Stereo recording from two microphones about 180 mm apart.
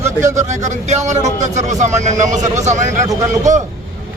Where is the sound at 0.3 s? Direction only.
40° right (ahead or behind).